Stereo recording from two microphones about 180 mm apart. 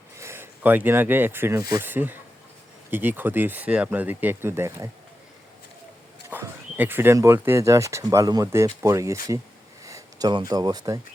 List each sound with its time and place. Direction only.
0.2 s speech: 15° right (ahead or behind)
6.3 s speech: 10° right (ahead or behind)
9.8 s a sound: 20° right (ahead or behind)
10.5 s speech: 20° right (ahead or behind)